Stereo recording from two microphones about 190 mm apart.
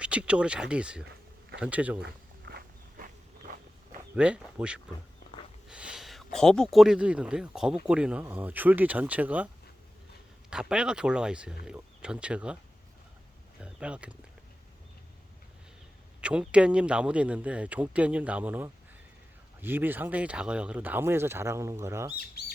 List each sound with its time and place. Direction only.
0.0 s a man's voice: 5° right (ahead or behind)
2.0 s walk: 60° right (ahead or behind)
4.1 s a man's voice: 5° right (ahead or behind)
10.5 s speech: 5° right (ahead or behind)
13.6 s speech: 5° right (ahead or behind)
16.2 s a man's voice: 5° right (ahead or behind)